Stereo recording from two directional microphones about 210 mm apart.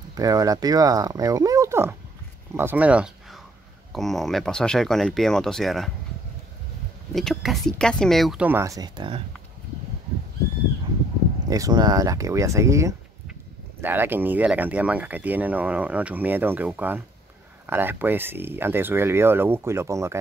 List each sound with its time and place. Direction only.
0.1 s speech: 15° right (ahead or behind); by 5.9 s centre (ahead or behind)
7.2 s speech: centre (ahead or behind); by 9.2 s 20° right (ahead or behind)
11.4 s speech: 15° right (ahead or behind)